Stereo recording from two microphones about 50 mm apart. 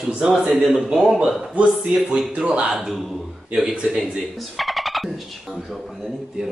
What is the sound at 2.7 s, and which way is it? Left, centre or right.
A man's voice, centre.